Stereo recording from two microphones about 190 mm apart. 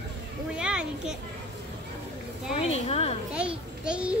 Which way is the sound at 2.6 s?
35° left (ahead or behind).